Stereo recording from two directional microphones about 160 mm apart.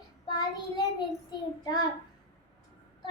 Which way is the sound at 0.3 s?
25° left (ahead or behind).